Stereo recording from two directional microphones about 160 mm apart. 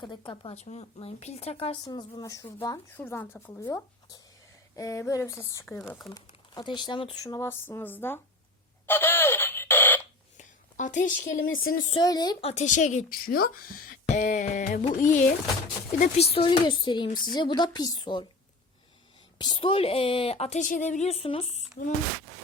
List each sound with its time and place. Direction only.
0.0 s a woman's voice: 30° left (ahead or behind); by 8.2 s 10° left (ahead or behind)
8.9 s alarm clock: 15° left (ahead or behind)
10.3 s speech: 50° left (ahead or behind)
11.9 s speech: 25° left (ahead or behind)
12.4 s speech: 40° left (ahead or behind); by 14.0 s 65° left (ahead or behind)
14.1 s music: 50° left (ahead or behind)
16.0 s a woman's voice: 40° left (ahead or behind)
19.4 s a woman's voice: 30° left (ahead or behind)